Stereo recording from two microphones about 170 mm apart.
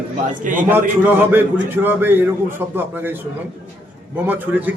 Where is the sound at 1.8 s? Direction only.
10° right (ahead or behind).